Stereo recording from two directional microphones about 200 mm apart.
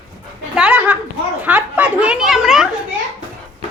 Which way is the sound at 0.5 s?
5° right (ahead or behind).